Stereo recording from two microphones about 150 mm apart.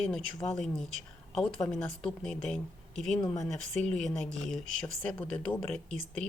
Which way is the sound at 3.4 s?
5° left (ahead or behind).